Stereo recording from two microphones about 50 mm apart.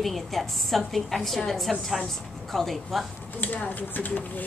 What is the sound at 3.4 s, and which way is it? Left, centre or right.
Speech, left.